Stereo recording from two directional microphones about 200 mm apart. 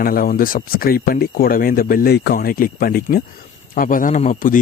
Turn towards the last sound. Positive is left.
turn(degrees=40)  # may be behind; listen again after turning